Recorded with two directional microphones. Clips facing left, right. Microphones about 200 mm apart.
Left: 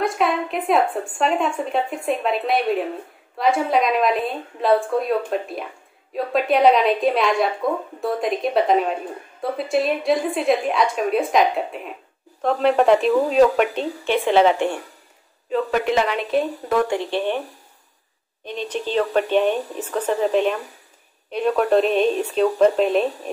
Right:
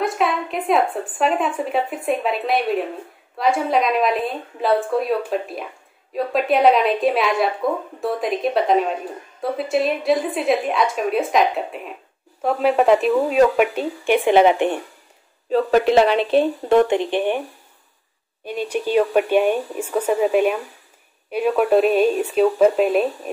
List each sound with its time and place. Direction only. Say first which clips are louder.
0.0 s a woman's voice: even; centre (ahead or behind); by 14.8 s 15° right (ahead or behind)
15.5 s speech: right 5 dB; 35° right (ahead or behind); by 17.4 s 15° right (ahead or behind)
18.4 s speech: right 3 dB; 10° right (ahead or behind)